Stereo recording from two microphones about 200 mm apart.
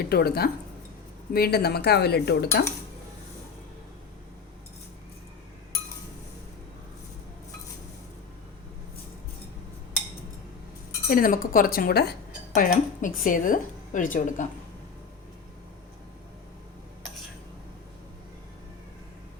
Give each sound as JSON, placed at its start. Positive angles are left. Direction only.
{"t": 0.0, "sound": "speech", "side_deg": 50}
{"t": 11.1, "sound": "speech", "side_deg": 45}